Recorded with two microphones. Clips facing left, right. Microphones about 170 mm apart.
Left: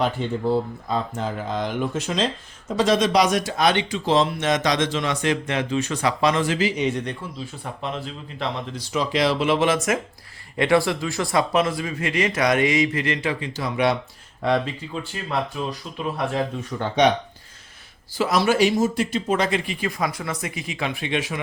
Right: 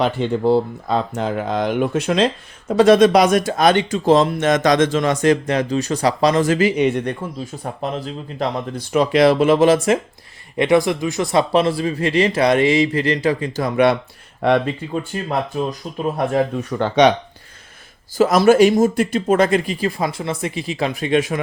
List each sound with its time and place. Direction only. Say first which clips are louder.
0.0 s speech: right 5 dB; 85° right; by 10.0 s 30° right (ahead or behind)
10.6 s speech: right 4 dB; 20° right (ahead or behind); by 16.4 s 45° right (ahead or behind)
16.6 s speech: right 4 dB; 75° right (ahead or behind); by 17.1 s 90° right
18.2 s speech: right 7 dB; 45° right (ahead or behind)